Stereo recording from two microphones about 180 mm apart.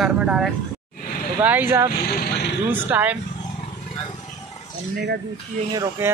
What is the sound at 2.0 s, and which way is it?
Vehicle, 60° left (ahead or behind).